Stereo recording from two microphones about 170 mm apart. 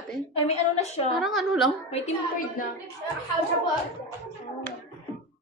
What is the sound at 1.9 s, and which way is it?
Speech, 40° left (ahead or behind).